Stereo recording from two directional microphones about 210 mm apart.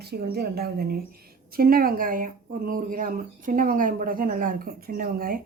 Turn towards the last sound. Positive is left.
turn(degrees=-45)  # may be behind; listen again after turning